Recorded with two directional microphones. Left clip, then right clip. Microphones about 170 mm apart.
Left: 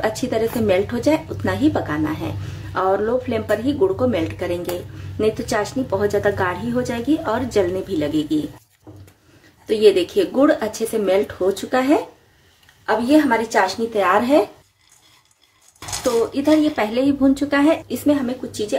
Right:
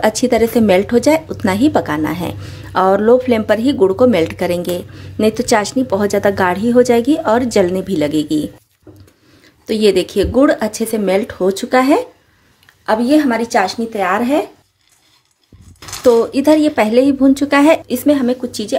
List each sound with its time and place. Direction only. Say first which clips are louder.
0.0 s a woman's voice: right 7 dB; 50° right (ahead or behind)
9.7 s a woman's voice: right 1 dB; 55° right (ahead or behind)
13.9 s speech: even; 35° right (ahead or behind)
16.3 s a woman's voice: right 5 dB; 50° right (ahead or behind)